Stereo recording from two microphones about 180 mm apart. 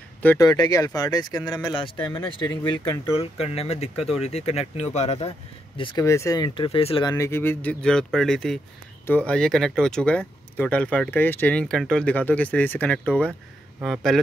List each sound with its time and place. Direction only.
0.2 s speech: 10° left (ahead or behind)
2.0 s speech: 10° left (ahead or behind)
3.1 s speech: 35° left (ahead or behind)
6.0 s speech: 15° left (ahead or behind)
7.2 s speech: 15° left (ahead or behind)